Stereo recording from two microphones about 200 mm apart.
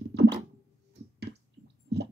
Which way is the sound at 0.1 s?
60° right (ahead or behind).